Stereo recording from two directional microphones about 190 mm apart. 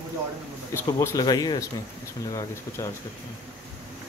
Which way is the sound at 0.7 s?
15° left (ahead or behind).